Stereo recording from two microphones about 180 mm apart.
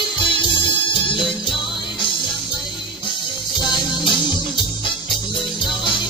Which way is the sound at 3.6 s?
25° left (ahead or behind).